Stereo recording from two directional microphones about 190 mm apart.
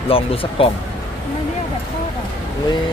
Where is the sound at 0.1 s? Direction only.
30° left (ahead or behind).